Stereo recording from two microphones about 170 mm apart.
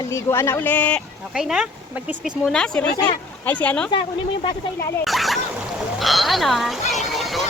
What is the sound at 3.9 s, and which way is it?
Speech, 30° left (ahead or behind).